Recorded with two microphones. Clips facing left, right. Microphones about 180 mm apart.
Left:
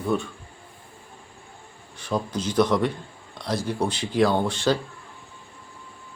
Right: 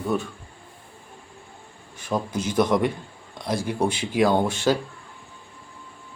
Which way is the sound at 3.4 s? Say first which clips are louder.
Right 1 dB; 50° right (ahead or behind).